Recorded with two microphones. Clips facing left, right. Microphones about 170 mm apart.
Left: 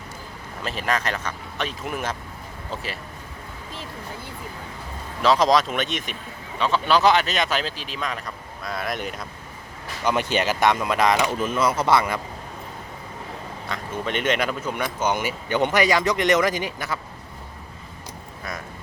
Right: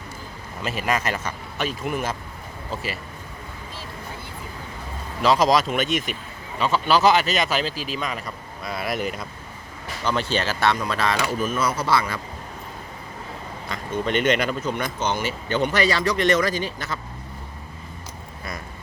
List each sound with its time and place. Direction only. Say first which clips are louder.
0.6 s speech: right 1 dB; 5° right (ahead or behind)
5.2 s speech: even; centre (ahead or behind)
10.0 s speech: left 2 dB; 15° left (ahead or behind)
13.7 s speech: right 3 dB; centre (ahead or behind)